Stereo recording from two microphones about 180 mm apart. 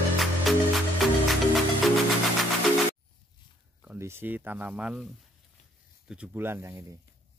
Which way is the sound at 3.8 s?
10° right (ahead or behind).